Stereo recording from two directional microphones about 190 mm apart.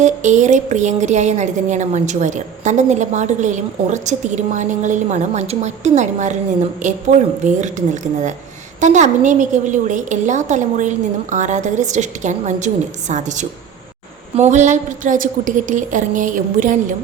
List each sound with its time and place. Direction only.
0.0 s a woman's voice: 40° right (ahead or behind)